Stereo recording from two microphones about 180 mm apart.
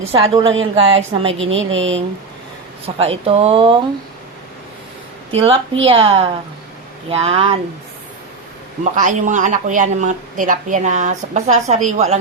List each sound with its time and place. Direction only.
0.1 s speech: 30° right (ahead or behind)
1.3 s speech: 90° right
2.8 s speech: 35° right (ahead or behind)
5.3 s speech: 30° right (ahead or behind)
8.8 s speech: 45° right (ahead or behind)